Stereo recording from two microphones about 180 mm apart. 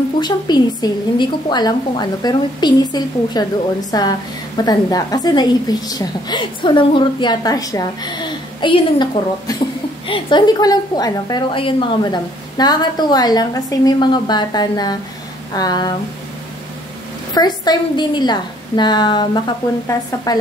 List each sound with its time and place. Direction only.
0.2 s a woman's voice: 25° left (ahead or behind)
17.3 s a woman's voice: 20° left (ahead or behind)